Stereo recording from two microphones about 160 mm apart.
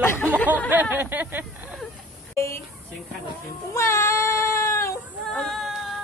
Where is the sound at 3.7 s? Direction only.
15° left (ahead or behind).